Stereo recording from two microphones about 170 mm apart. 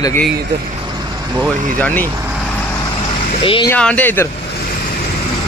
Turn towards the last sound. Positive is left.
turn(degrees=10)  # may be behind; listen again after turning